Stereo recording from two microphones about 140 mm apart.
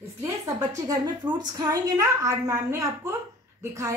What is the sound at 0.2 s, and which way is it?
A woman's voice, 25° right (ahead or behind).